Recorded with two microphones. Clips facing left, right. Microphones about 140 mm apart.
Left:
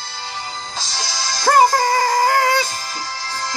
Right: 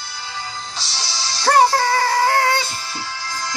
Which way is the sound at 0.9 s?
45° left (ahead or behind).